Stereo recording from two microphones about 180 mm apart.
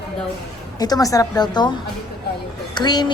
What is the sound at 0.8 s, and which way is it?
A woman's voice, 20° left (ahead or behind).